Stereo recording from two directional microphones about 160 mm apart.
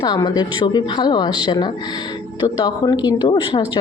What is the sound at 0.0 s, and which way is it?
Speech, 25° left (ahead or behind).